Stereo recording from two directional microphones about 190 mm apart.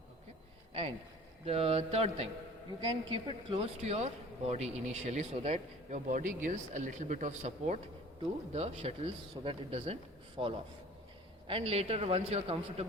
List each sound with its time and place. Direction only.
1.5 s a man's voice: 30° right (ahead or behind)